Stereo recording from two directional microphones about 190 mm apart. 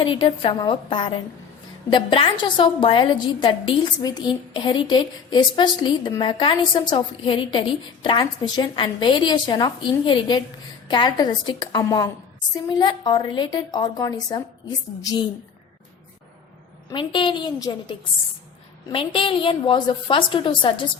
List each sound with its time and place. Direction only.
0.0 s a woman's voice: 25° left (ahead or behind)
16.9 s a woman's voice: 25° left (ahead or behind)